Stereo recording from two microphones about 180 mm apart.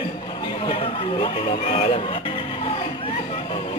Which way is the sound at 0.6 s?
30° left (ahead or behind).